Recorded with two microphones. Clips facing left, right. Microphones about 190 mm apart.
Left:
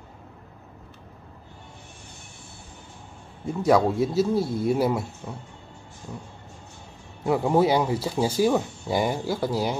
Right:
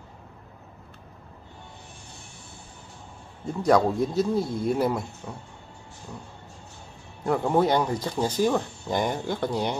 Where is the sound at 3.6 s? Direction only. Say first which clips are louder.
Left 1 dB; 5° left (ahead or behind).